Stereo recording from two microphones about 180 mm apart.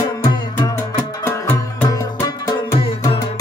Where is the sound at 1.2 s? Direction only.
10° left (ahead or behind).